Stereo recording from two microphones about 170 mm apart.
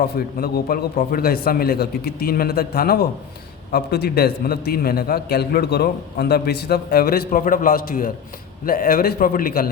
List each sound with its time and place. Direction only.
0.0 s a man's voice: 65° left (ahead or behind)